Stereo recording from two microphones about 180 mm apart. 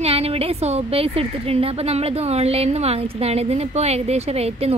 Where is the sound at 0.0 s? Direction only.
35° right (ahead or behind).